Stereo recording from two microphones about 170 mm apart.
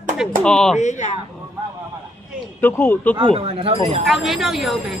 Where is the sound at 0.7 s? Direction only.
45° left (ahead or behind).